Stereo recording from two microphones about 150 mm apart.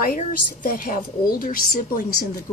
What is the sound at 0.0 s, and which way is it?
A woman's voice, 70° left (ahead or behind).